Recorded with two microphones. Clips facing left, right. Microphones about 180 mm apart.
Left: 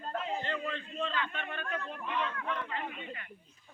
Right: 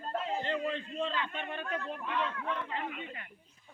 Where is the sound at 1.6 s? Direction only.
15° right (ahead or behind).